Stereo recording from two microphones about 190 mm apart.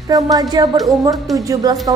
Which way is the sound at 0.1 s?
20° right (ahead or behind).